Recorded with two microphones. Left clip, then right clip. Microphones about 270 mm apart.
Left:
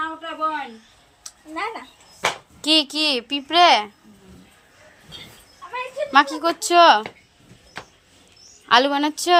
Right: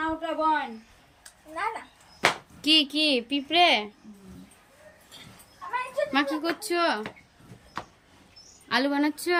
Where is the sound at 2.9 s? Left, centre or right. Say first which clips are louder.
Left 3 dB; left.